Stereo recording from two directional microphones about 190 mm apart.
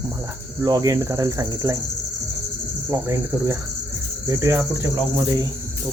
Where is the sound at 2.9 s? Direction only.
15° right (ahead or behind).